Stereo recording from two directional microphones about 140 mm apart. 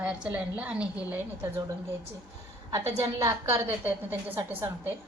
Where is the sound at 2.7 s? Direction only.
25° right (ahead or behind).